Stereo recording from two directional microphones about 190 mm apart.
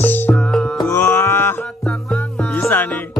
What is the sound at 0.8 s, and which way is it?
Carnatic music, 10° left (ahead or behind).